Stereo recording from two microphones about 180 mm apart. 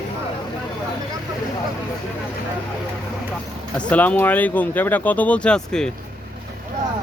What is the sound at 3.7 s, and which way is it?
Speech, 10° left (ahead or behind).